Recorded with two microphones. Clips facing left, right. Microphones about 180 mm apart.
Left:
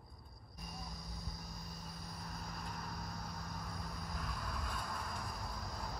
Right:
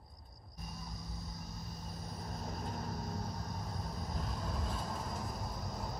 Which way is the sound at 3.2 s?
25° right (ahead or behind).